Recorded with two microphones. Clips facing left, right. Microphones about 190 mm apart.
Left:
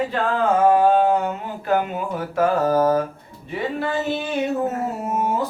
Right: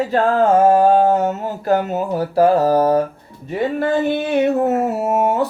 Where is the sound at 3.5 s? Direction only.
50° right (ahead or behind).